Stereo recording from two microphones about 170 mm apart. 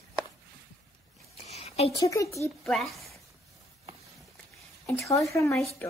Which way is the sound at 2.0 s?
20° left (ahead or behind).